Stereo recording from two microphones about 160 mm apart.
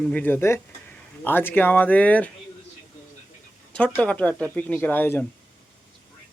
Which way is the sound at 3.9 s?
5° left (ahead or behind).